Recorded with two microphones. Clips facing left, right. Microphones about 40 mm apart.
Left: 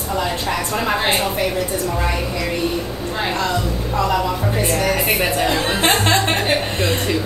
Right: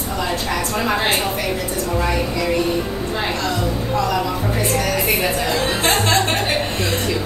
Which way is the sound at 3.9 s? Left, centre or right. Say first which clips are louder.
Left 2 dB; centre.